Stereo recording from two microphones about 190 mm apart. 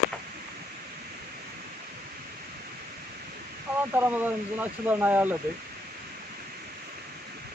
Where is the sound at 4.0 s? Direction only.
10° right (ahead or behind).